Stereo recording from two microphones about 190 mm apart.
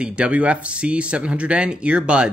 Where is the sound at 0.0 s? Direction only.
5° right (ahead or behind).